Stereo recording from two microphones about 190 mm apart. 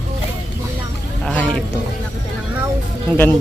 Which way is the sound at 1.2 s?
10° left (ahead or behind).